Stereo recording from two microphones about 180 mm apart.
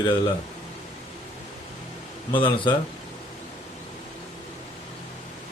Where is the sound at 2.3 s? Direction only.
25° left (ahead or behind).